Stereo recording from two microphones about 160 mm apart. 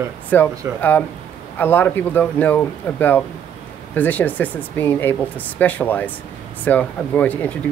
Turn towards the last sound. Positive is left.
turn(degrees=10)  # may be behind; listen again after turning